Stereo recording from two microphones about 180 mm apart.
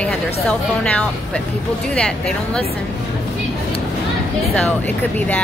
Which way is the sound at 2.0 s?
5° left (ahead or behind).